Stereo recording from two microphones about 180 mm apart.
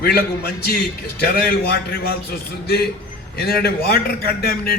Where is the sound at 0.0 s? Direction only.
60° left (ahead or behind).